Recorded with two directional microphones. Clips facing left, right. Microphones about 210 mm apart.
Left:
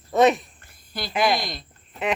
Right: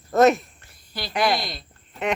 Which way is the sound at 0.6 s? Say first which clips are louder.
Left 1 dB; 50° left (ahead or behind).